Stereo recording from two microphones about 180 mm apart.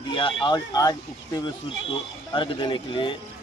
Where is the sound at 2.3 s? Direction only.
25° left (ahead or behind).